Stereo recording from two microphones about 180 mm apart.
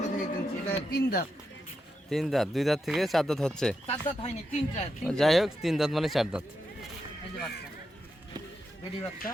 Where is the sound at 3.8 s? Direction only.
35° left (ahead or behind).